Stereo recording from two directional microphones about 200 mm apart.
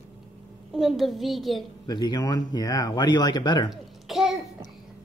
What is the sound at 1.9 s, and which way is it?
Speech, 20° left (ahead or behind).